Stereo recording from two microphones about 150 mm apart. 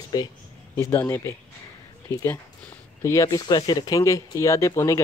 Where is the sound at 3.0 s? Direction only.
20° left (ahead or behind).